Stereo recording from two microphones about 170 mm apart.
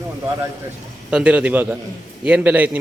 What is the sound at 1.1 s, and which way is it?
Speech, 5° right (ahead or behind).